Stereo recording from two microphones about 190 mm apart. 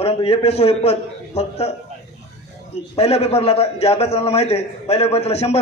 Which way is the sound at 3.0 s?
35° left (ahead or behind).